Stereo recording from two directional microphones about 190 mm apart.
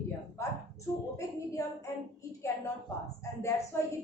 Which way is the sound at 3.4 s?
15° left (ahead or behind).